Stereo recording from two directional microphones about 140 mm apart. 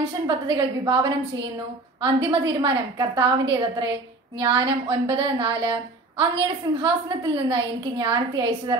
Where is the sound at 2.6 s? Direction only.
35° right (ahead or behind).